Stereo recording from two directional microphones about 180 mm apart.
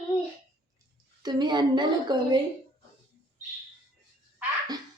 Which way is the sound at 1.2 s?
25° right (ahead or behind).